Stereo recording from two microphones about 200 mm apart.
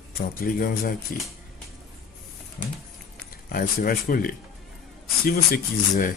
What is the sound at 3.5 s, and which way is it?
Speech, 45° left (ahead or behind).